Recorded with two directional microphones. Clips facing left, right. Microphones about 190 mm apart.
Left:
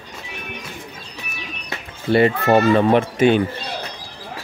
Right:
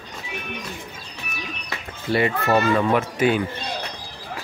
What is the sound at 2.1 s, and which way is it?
A child's voice, 30° left (ahead or behind).